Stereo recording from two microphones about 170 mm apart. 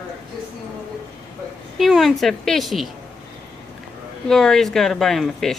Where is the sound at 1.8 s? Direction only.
Centre (ahead or behind).